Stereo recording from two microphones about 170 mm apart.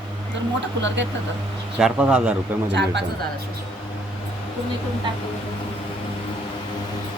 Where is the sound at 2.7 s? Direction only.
90° right.